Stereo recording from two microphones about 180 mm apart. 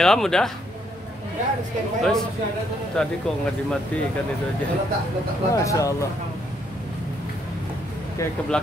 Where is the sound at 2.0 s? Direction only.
Centre (ahead or behind).